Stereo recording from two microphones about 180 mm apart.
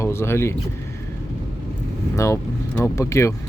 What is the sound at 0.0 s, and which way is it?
Speech, 15° left (ahead or behind).